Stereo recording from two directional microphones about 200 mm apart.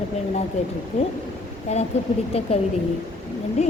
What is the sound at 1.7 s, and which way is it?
Speech, 35° left (ahead or behind).